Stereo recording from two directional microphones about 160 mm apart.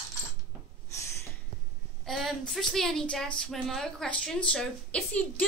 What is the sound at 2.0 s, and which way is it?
A woman's voice, centre (ahead or behind).